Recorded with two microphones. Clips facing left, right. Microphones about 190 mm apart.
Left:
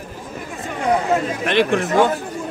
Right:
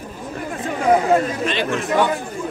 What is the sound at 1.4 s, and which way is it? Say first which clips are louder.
Speech: left 4 dB; 60° left (ahead or behind).